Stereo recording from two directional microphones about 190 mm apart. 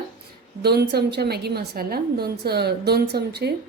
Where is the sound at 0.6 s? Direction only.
60° right (ahead or behind).